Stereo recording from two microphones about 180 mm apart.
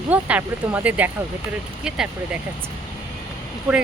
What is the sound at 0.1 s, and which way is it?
Speech, 10° right (ahead or behind).